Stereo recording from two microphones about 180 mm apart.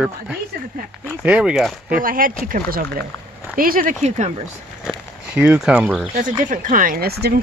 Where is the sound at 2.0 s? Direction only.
50° right (ahead or behind).